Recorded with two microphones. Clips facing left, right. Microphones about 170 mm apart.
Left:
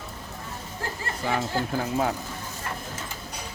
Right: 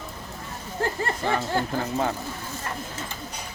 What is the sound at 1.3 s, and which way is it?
Speech, 5° left (ahead or behind).